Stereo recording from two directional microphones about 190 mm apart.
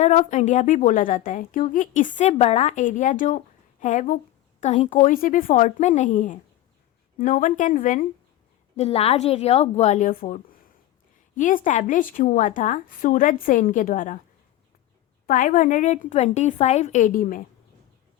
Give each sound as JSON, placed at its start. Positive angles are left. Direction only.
{"t": 0.0, "sound": "a woman's voice", "side_deg": 40}
{"t": 8.7, "sound": "a woman's voice", "side_deg": 30}
{"t": 15.3, "sound": "a woman's voice", "side_deg": 45}